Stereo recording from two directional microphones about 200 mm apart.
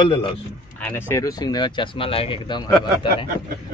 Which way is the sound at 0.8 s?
10° left (ahead or behind).